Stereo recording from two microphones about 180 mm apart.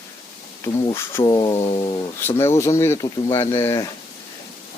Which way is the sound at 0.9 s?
20° left (ahead or behind).